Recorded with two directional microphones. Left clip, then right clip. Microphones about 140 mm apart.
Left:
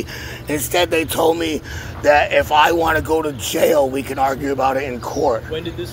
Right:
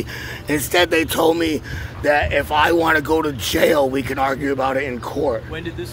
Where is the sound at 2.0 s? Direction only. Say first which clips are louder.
Left 4 dB; 75° right (ahead or behind); by 4.5 s 50° right (ahead or behind).